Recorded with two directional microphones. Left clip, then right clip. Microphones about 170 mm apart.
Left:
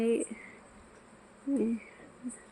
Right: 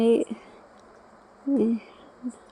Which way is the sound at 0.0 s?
35° right (ahead or behind).